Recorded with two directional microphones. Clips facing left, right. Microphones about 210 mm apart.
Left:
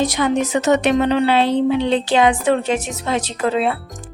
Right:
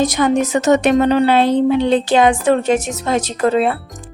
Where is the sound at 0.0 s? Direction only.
45° right (ahead or behind).